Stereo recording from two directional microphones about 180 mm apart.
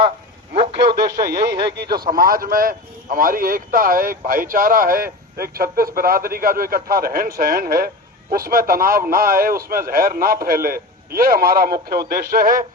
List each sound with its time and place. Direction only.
0.5 s radio: 35° right (ahead or behind)
1.6 s speech: 65° right (ahead or behind)
2.0 s a man's voice: 50° right (ahead or behind)